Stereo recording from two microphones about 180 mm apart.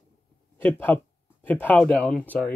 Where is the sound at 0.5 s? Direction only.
10° left (ahead or behind).